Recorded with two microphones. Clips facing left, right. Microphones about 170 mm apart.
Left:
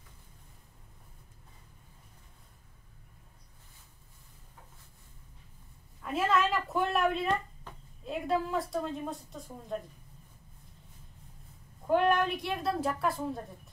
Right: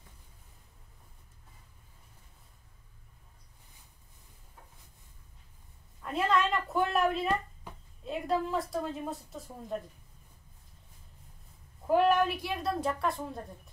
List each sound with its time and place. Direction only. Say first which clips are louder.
6.0 s a woman's voice: even; 5° left (ahead or behind)
11.9 s a woman's voice: right 1 dB; 5° right (ahead or behind)